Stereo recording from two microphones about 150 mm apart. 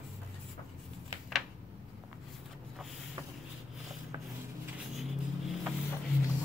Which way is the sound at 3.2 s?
25° right (ahead or behind).